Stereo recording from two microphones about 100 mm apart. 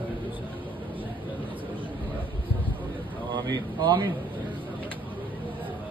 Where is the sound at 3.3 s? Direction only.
45° right (ahead or behind).